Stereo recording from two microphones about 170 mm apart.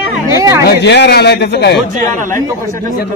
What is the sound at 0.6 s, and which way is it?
A man's voice, 90° left.